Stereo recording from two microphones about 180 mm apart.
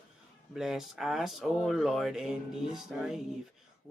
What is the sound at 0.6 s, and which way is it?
Speech, centre (ahead or behind).